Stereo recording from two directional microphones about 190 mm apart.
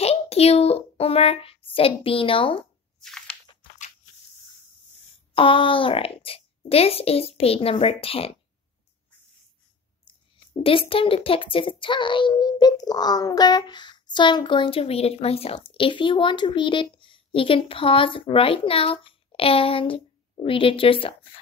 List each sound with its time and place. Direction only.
0.0 s a child's voice: 35° left (ahead or behind)
3.0 s a sound: 5° left (ahead or behind)
5.3 s a child's voice: 30° left (ahead or behind)
10.0 s speech: 30° left (ahead or behind)